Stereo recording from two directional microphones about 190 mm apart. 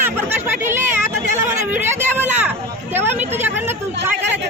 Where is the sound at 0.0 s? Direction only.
10° right (ahead or behind).